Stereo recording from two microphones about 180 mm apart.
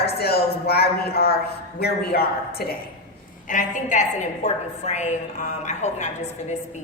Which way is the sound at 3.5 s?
45° left (ahead or behind).